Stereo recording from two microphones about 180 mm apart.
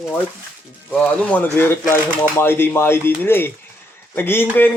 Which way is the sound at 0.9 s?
5° left (ahead or behind).